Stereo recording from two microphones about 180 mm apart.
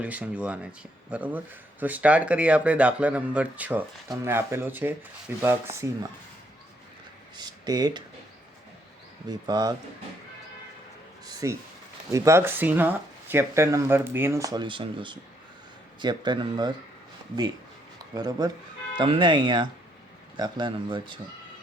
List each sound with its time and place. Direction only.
0.0 s speech: 10° right (ahead or behind)
7.3 s speech: 25° right (ahead or behind)
9.3 s speech: 20° right (ahead or behind)
11.3 s a sound: 20° right (ahead or behind)
12.1 s speech: 15° right (ahead or behind)
18.1 s speech: 20° right (ahead or behind)